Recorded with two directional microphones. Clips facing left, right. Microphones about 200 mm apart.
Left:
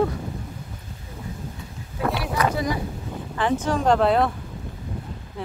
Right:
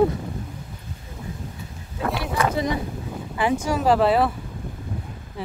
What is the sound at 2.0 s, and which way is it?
Vehicle, centre (ahead or behind).